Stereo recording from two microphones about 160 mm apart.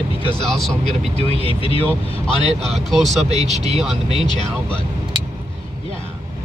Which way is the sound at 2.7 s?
Centre (ahead or behind).